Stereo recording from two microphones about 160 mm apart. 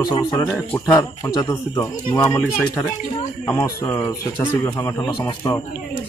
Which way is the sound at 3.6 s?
20° left (ahead or behind).